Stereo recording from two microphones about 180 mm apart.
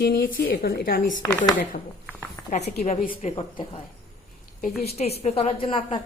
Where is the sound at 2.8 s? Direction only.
40° left (ahead or behind).